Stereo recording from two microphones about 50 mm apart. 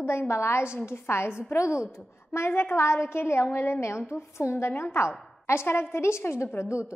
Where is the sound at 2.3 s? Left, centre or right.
Left.